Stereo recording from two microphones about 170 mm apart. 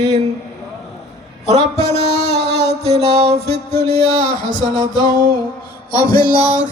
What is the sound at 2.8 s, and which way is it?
Music, 40° right (ahead or behind).